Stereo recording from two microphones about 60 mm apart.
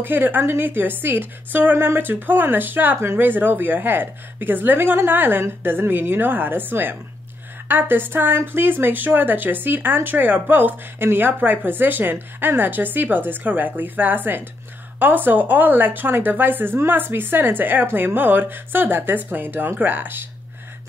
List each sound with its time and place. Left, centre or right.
0.0 s a woman's voice: right